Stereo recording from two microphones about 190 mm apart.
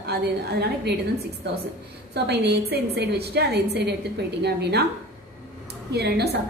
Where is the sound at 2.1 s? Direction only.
60° right (ahead or behind).